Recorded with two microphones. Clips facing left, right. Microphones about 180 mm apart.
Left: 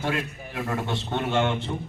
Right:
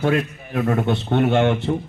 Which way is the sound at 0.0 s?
60° right (ahead or behind).